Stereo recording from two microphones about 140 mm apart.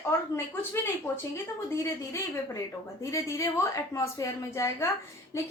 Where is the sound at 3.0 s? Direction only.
20° left (ahead or behind).